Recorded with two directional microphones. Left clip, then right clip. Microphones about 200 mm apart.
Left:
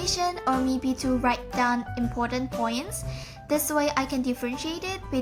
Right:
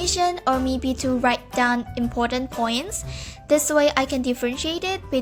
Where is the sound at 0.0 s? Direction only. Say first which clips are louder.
Right 5 dB; 30° right (ahead or behind).